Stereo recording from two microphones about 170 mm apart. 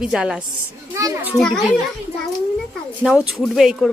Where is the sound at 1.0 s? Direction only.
20° right (ahead or behind).